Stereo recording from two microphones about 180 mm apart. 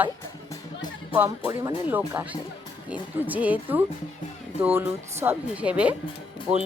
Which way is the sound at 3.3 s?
10° right (ahead or behind).